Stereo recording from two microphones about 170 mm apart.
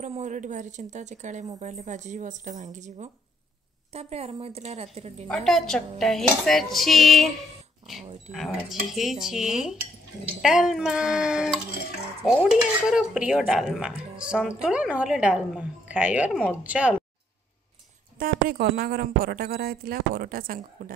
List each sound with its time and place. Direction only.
0.0 s a woman's voice: 45° right (ahead or behind)
5.3 s a woman's voice: 5° left (ahead or behind)
18.2 s a woman's voice: 60° right (ahead or behind)